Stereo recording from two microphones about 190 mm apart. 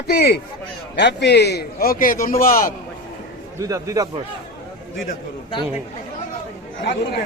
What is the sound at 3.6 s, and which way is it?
Speech, 15° right (ahead or behind).